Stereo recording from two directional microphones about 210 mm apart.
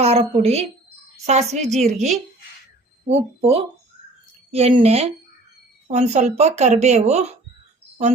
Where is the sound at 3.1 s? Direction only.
25° right (ahead or behind).